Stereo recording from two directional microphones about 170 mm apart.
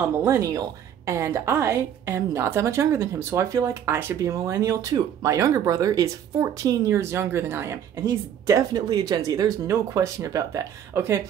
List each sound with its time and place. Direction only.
0.0 s a woman's voice: 10° right (ahead or behind)